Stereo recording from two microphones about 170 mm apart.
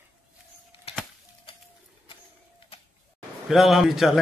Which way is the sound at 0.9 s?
35° left (ahead or behind).